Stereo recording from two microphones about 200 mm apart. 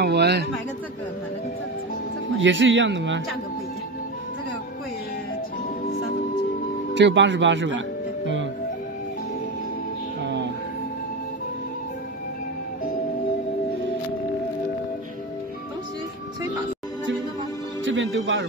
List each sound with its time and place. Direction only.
0.0 s a sound: 55° right (ahead or behind)
2.3 s a man's voice: 70° right (ahead or behind)
7.0 s speech: 65° right (ahead or behind)
17.8 s music: 70° right (ahead or behind)